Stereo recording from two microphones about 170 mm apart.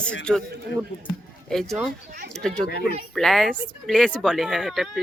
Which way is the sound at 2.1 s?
50° right (ahead or behind).